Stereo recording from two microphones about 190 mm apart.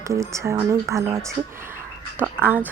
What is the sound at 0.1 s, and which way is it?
Speech, 15° right (ahead or behind).